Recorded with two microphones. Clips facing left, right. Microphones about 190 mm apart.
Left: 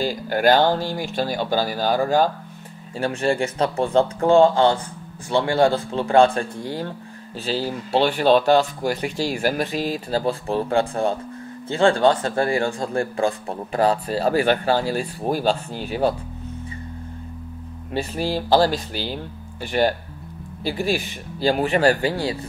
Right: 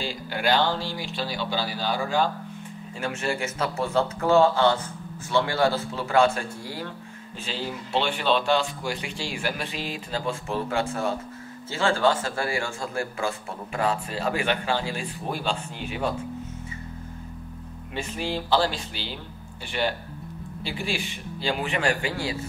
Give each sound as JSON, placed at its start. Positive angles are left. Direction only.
{"t": 0.0, "sound": "speech", "side_deg": 45}
{"t": 5.6, "sound": "speech", "side_deg": 30}
{"t": 17.9, "sound": "speech", "side_deg": 35}